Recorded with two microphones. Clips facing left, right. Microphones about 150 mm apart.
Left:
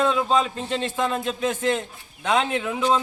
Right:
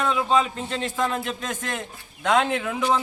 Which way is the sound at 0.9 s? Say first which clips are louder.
Left 1 dB; 20° left (ahead or behind).